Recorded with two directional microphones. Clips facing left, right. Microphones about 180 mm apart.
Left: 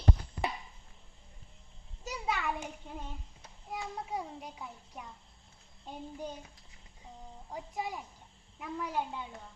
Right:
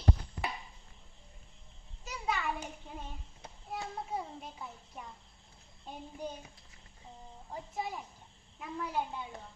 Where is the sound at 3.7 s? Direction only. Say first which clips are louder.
Even; 15° left (ahead or behind).